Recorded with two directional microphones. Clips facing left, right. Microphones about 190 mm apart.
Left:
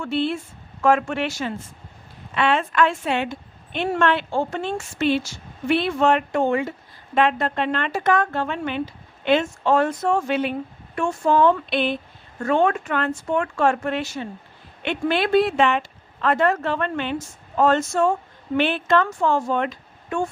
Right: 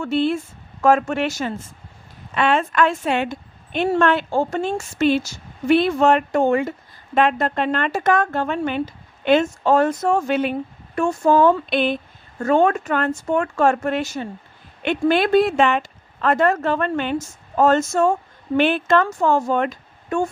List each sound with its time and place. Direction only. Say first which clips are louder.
0.0 s a woman's voice: right 4 dB; 45° right (ahead or behind)